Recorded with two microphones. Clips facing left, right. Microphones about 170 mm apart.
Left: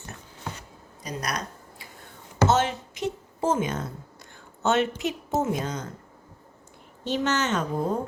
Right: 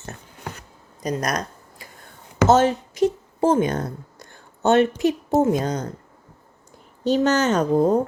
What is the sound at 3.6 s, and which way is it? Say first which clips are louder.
Speech: right 6 dB; 35° right (ahead or behind).